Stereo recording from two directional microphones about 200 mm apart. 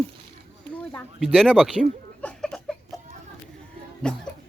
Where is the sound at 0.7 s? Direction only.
5° left (ahead or behind).